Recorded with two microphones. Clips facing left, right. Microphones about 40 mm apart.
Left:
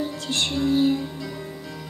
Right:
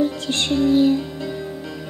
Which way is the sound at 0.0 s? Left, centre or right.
Right.